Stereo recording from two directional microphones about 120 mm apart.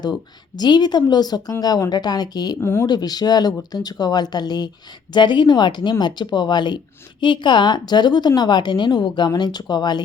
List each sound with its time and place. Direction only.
0.0 s speech: 35° left (ahead or behind)
2.6 s speech: 20° left (ahead or behind)
2.8 s speech: 35° left (ahead or behind)